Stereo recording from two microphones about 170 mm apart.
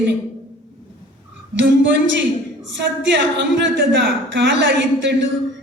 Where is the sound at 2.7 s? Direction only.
90° right.